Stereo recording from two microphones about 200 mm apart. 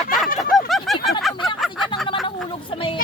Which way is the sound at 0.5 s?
Centre (ahead or behind).